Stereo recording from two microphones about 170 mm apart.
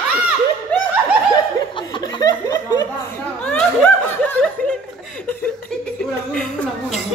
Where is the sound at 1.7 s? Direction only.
30° left (ahead or behind).